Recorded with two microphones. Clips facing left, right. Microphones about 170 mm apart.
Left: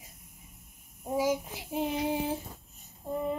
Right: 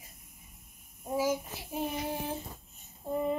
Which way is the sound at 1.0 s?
15° left (ahead or behind).